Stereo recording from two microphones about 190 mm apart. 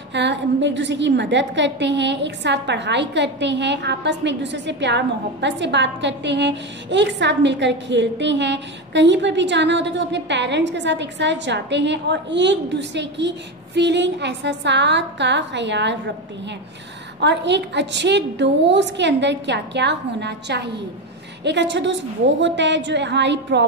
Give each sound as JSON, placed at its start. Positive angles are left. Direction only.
{"t": 0.1, "sound": "a woman's voice", "side_deg": -65}
{"t": 17.2, "sound": "a woman's voice", "side_deg": -65}